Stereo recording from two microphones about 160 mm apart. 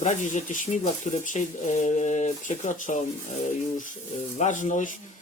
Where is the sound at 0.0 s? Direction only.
50° left (ahead or behind).